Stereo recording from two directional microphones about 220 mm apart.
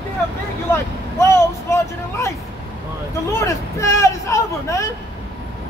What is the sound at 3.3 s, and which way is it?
Speech, 15° left (ahead or behind).